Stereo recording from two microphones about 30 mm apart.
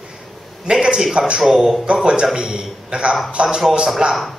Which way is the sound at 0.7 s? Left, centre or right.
Right.